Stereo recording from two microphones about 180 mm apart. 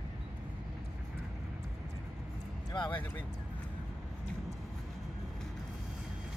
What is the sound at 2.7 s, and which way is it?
Speech, 25° left (ahead or behind).